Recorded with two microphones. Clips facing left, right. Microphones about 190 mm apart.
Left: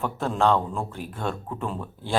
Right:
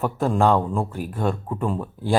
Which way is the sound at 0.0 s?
10° right (ahead or behind).